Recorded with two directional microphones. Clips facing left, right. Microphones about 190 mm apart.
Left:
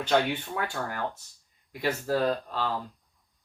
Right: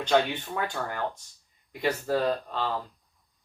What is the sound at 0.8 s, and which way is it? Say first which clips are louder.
Speech: right 1 dB; centre (ahead or behind).